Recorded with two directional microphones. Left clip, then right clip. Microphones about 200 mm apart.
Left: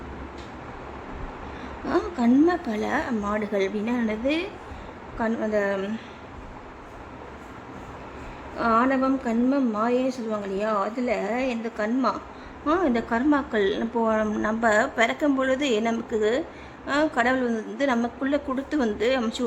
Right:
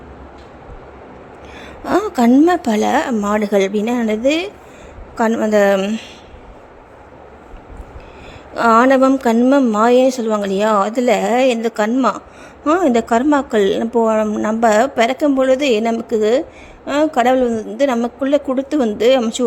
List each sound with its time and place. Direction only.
1.9 s a sound: 40° right (ahead or behind)
2.3 s a woman's voice: 35° right (ahead or behind)
8.5 s a woman's voice: 40° right (ahead or behind)
14.0 s a woman's voice: 15° right (ahead or behind)